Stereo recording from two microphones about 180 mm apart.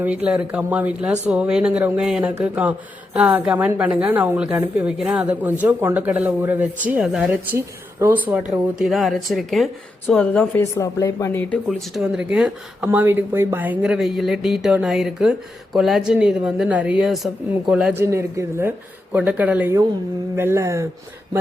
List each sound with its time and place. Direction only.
0.3 s speech: 5° right (ahead or behind)